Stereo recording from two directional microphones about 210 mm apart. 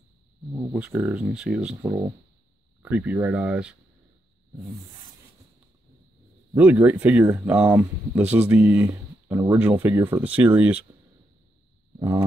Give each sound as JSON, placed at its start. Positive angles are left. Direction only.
{"t": 0.7, "sound": "speech", "side_deg": -5}
{"t": 1.9, "sound": "speech", "side_deg": -15}
{"t": 6.5, "sound": "speech", "side_deg": -5}
{"t": 12.0, "sound": "speech", "side_deg": -15}